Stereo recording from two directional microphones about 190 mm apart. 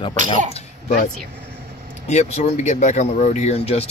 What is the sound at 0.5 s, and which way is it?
Speech, 35° left (ahead or behind).